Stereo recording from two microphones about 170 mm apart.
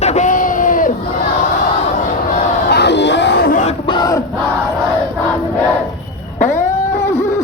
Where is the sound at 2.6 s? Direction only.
85° left; by 3.6 s 70° left (ahead or behind).